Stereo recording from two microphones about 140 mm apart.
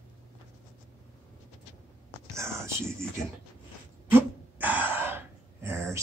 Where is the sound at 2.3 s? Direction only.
20° right (ahead or behind).